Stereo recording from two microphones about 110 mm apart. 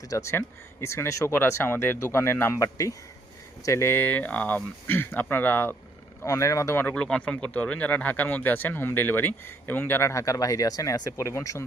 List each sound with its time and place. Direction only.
0.1 s speech: 25° left (ahead or behind)
6.2 s speech: 30° left (ahead or behind)
6.8 s speech: 10° left (ahead or behind); by 11.6 s 30° left (ahead or behind)